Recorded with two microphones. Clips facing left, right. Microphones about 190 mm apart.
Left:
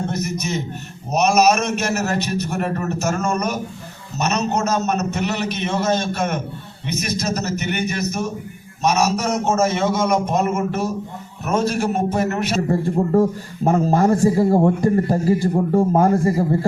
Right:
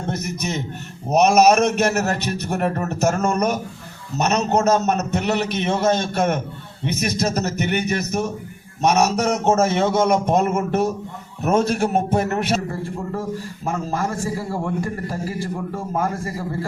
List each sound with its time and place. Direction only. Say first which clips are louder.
0.1 s a man's voice: left 1 dB; 55° right (ahead or behind)
4.2 s a man's voice: right 2 dB; 55° right (ahead or behind)
12.6 s a man's voice: left 8 dB; 40° left (ahead or behind)